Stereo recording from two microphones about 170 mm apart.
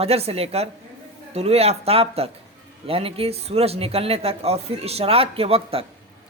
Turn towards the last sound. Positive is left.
turn(degrees=-35)  # may be behind; listen again after turning